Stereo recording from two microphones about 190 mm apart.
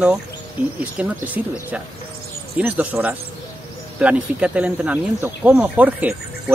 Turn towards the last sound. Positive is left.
turn(degrees=-10)  # may be behind; listen again after turning